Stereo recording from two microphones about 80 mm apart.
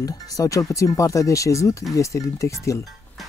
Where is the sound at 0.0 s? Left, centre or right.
Left.